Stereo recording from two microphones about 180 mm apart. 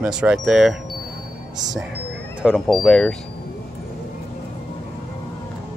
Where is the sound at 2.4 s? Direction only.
Centre (ahead or behind).